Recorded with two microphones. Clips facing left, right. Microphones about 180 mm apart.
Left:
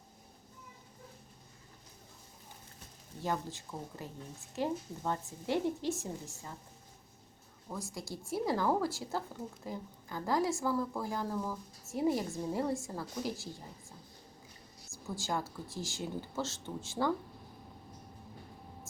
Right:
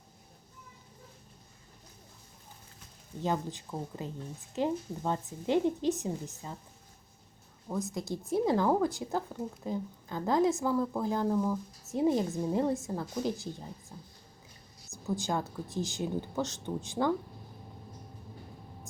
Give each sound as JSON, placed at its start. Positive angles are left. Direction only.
{"t": 3.2, "sound": "a woman's voice", "side_deg": -20}
{"t": 7.7, "sound": "a woman's voice", "side_deg": -20}
{"t": 14.8, "sound": "a woman's voice", "side_deg": -20}